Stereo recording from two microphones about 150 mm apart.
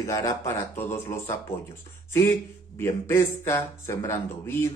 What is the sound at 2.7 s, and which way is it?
Speech, 15° left (ahead or behind).